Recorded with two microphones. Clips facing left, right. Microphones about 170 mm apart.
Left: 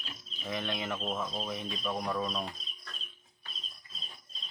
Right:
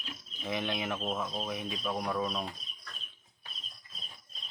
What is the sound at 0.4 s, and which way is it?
Speech, 15° right (ahead or behind).